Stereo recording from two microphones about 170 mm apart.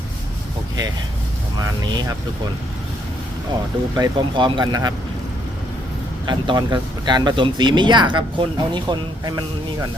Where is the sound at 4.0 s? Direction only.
25° right (ahead or behind).